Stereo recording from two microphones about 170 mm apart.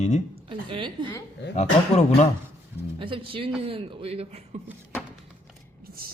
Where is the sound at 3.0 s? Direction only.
30° right (ahead or behind).